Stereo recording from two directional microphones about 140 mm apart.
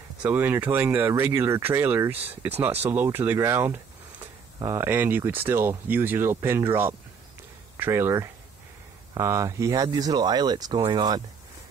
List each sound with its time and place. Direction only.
0.2 s speech: 10° right (ahead or behind); by 11.2 s 30° right (ahead or behind)